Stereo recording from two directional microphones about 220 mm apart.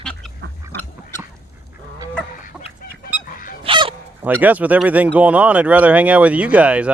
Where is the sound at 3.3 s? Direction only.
40° left (ahead or behind).